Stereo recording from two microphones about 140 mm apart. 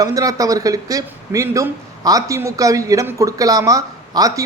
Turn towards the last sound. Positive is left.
turn(degrees=-25)  # may be behind; listen again after turning